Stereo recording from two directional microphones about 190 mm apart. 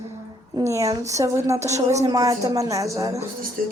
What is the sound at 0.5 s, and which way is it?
A woman's voice, 15° right (ahead or behind).